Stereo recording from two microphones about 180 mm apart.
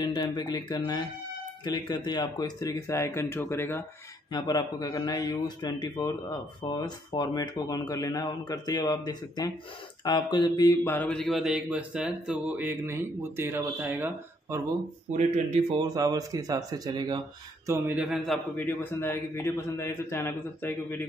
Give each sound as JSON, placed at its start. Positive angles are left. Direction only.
{"t": 0.0, "sound": "a man's voice", "side_deg": 25}
{"t": 4.3, "sound": "a man's voice", "side_deg": 25}
{"t": 10.9, "sound": "speech", "side_deg": 10}
{"t": 15.1, "sound": "speech", "side_deg": -35}
{"t": 15.8, "sound": "speech", "side_deg": -20}
{"t": 17.6, "sound": "a man's voice", "side_deg": -10}
{"t": 18.8, "sound": "a man's voice", "side_deg": 15}